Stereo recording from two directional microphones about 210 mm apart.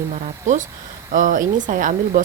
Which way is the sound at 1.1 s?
40° right (ahead or behind).